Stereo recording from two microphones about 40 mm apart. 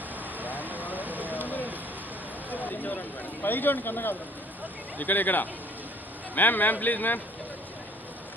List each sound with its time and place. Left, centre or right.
0.4 s vehicle: right
0.9 s rain on surface: right
2.5 s a sound: left
3.4 s speech: left
4.9 s a man's voice: left